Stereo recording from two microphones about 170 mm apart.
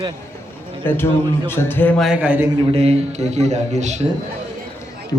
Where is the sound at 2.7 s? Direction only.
35° right (ahead or behind).